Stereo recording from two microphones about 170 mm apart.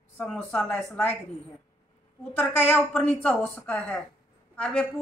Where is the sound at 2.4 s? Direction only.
10° left (ahead or behind).